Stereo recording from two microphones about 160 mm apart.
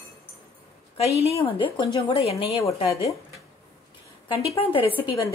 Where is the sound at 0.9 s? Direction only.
40° left (ahead or behind).